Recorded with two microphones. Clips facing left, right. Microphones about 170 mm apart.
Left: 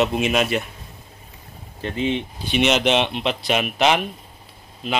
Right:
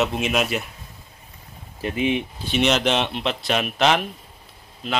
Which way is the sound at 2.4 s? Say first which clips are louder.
Left 2 dB; centre (ahead or behind).